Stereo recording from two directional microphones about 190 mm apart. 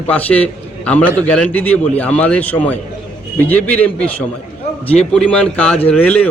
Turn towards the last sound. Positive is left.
turn(degrees=5)  # may be behind; listen again after turning